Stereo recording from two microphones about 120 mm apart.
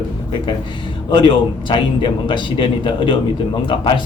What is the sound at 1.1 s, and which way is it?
Speech, 40° left (ahead or behind).